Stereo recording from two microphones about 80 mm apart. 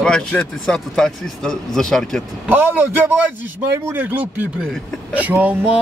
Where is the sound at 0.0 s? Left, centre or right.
Centre.